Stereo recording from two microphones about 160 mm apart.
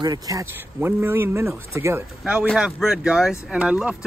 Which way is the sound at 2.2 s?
5° right (ahead or behind).